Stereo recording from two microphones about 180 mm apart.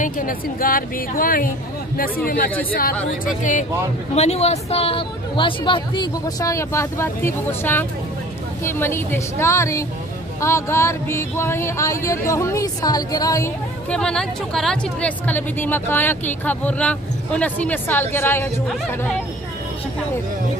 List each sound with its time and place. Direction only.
0.0 s a woman's voice: 50° left (ahead or behind)
4.1 s speech: 35° left (ahead or behind); by 13.5 s 20° left (ahead or behind)
13.8 s speech: 5° left (ahead or behind)